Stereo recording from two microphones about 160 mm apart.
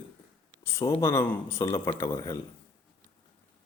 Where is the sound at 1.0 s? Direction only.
15° left (ahead or behind).